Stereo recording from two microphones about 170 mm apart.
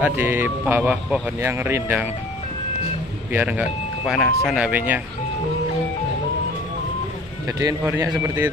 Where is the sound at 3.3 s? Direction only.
10° right (ahead or behind).